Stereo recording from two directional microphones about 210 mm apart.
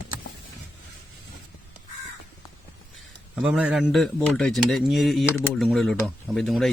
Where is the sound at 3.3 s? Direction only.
5° right (ahead or behind).